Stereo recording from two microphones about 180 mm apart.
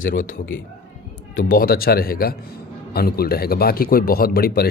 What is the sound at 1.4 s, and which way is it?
Speech, 50° left (ahead or behind).